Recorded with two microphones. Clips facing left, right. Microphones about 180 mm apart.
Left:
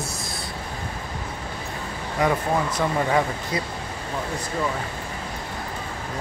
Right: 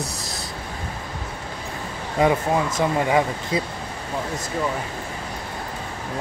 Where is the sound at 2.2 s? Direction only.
25° right (ahead or behind).